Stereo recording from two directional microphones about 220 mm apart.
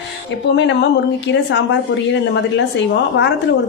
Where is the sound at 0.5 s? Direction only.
55° left (ahead or behind).